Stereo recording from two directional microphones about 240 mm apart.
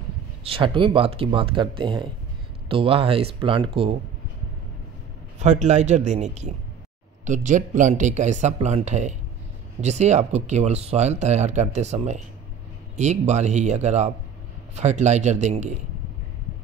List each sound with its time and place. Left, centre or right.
0.4 s speech: right
5.4 s speech: right